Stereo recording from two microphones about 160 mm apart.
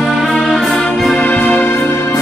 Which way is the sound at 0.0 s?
Centre (ahead or behind).